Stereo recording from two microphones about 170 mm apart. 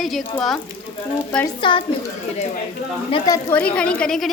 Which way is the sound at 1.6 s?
30° left (ahead or behind).